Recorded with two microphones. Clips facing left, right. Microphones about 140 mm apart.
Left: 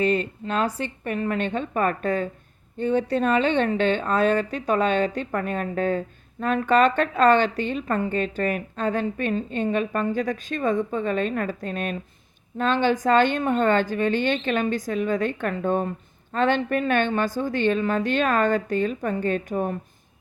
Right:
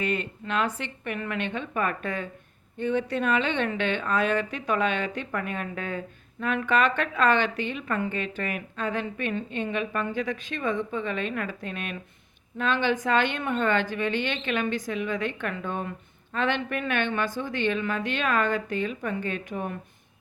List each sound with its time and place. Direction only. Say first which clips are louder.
0.0 s a woman's voice: left 6 dB; 35° left (ahead or behind)